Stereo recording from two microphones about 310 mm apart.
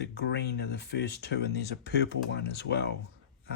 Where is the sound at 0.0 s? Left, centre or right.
Left.